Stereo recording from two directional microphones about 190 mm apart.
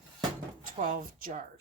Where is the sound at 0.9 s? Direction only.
40° right (ahead or behind).